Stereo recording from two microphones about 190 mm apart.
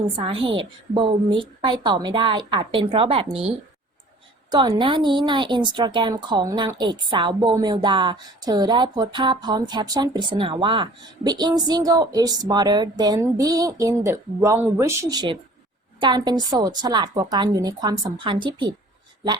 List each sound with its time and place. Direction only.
0.2 s a woman's voice: 30° right (ahead or behind)
4.5 s a woman's voice: 25° right (ahead or behind)